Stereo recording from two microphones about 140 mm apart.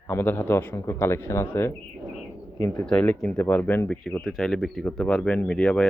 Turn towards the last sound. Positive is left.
turn(degrees=5)  # may be behind; listen again after turning